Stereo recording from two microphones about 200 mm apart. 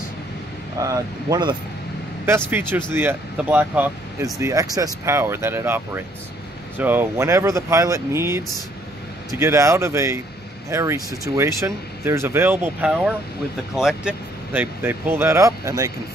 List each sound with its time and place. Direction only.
0.7 s speech: 15° right (ahead or behind)
2.9 s speech: 10° right (ahead or behind)